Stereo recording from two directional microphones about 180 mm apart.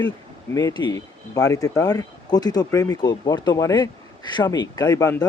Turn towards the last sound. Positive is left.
turn(degrees=20)  # may be behind; listen again after turning